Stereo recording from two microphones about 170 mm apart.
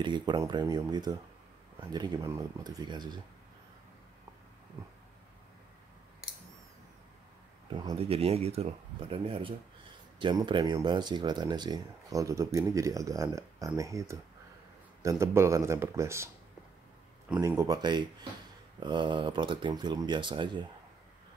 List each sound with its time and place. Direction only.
0.0 s speech: 25° right (ahead or behind)
7.7 s a man's voice: 30° right (ahead or behind)
17.4 s speech: 20° right (ahead or behind)